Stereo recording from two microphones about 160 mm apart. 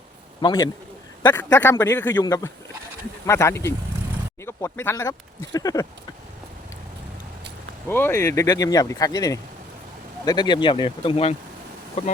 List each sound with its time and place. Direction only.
0.4 s speech: 20° left (ahead or behind)
7.9 s speech: 15° left (ahead or behind); by 11.3 s 35° left (ahead or behind)